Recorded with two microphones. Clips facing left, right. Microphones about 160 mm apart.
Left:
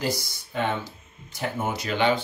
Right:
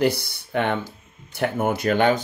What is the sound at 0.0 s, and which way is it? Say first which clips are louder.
Speech: right 7 dB; 60° right (ahead or behind).